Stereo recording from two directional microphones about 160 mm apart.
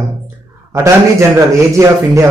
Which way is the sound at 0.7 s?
20° right (ahead or behind).